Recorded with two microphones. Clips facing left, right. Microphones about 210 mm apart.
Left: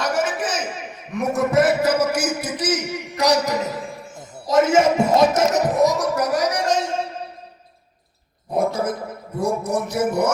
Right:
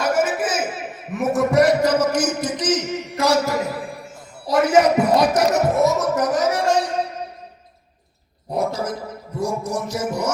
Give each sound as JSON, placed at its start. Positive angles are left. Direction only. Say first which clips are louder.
{"t": 0.0, "sound": "a sound", "louder": "right 2 dB", "side_deg": -10}
{"t": 4.4, "sound": "speech", "louder": "even", "side_deg": 25}
{"t": 8.5, "sound": "speech", "louder": "left 2 dB", "side_deg": 55}
{"t": 9.4, "sound": "music", "louder": "left 2 dB", "side_deg": 55}